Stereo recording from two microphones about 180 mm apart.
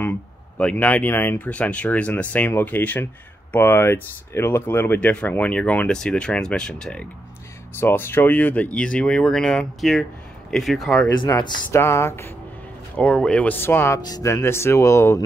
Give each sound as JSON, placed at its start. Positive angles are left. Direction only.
{"t": 0.6, "sound": "speech", "side_deg": 5}
{"t": 11.1, "sound": "speech", "side_deg": 25}